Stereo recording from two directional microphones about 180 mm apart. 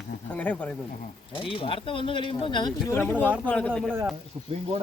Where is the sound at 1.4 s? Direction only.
30° left (ahead or behind); by 3.7 s 5° left (ahead or behind).